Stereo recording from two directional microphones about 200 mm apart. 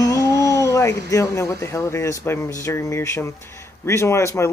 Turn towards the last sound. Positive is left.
turn(degrees=15)  # may be behind; listen again after turning